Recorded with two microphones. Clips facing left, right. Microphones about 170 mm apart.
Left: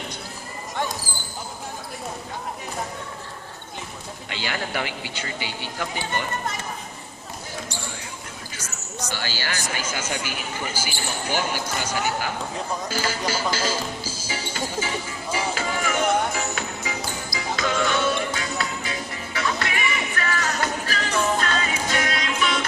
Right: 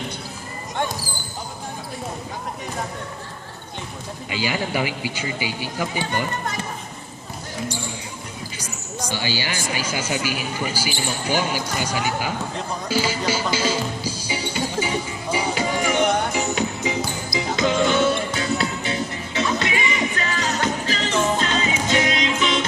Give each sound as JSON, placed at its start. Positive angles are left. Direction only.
{"t": 4.3, "sound": "speech", "side_deg": -10}
{"t": 8.5, "sound": "speech", "side_deg": -10}
{"t": 14.3, "sound": "music", "side_deg": -15}